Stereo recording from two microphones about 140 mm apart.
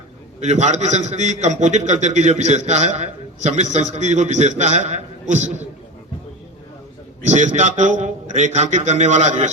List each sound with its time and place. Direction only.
0.3 s a man's voice: 55° right (ahead or behind)
7.2 s a man's voice: 60° right (ahead or behind)